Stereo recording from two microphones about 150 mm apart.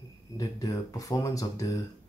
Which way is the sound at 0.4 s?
25° left (ahead or behind).